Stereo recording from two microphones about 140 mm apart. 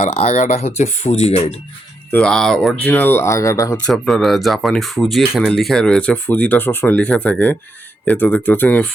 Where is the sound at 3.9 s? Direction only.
Centre (ahead or behind).